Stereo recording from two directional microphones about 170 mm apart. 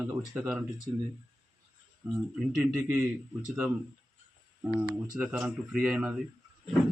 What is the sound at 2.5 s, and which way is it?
Speech, 5° right (ahead or behind).